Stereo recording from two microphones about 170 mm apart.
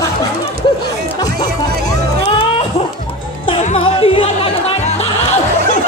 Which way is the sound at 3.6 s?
40° left (ahead or behind).